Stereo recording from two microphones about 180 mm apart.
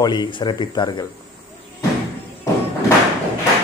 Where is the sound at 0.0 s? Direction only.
25° left (ahead or behind).